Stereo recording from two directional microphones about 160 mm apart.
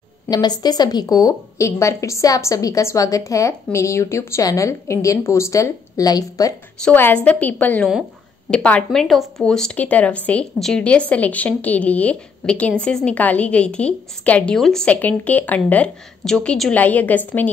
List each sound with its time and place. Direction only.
0.3 s a woman's voice: 25° left (ahead or behind)
6.8 s a woman's voice: 10° left (ahead or behind)